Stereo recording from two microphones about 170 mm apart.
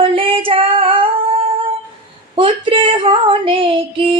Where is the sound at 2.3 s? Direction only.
30° right (ahead or behind).